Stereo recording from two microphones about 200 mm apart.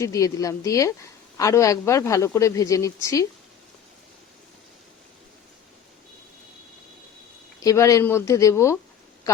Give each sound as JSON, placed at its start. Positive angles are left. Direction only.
{"t": 0.0, "sound": "speech", "side_deg": 15}
{"t": 7.6, "sound": "speech", "side_deg": 15}